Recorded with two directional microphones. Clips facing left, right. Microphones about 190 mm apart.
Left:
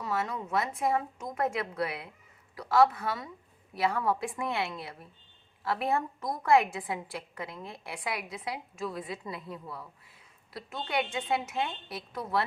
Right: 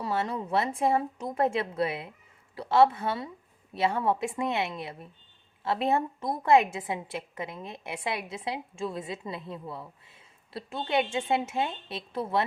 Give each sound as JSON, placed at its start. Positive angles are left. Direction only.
{"t": 0.0, "sound": "a woman's voice", "side_deg": -30}